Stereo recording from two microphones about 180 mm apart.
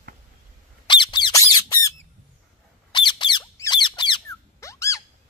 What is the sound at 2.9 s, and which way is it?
Squeak, 25° left (ahead or behind).